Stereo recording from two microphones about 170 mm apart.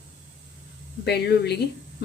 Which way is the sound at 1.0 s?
75° left (ahead or behind).